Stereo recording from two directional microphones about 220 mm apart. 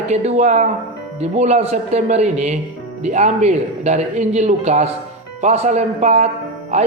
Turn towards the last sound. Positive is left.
turn(degrees=-30)  # may be behind; listen again after turning